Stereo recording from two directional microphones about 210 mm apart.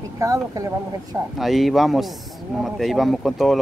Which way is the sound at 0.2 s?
15° right (ahead or behind).